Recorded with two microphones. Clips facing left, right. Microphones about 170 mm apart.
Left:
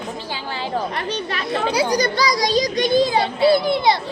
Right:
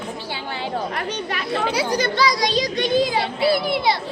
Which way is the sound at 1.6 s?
15° left (ahead or behind).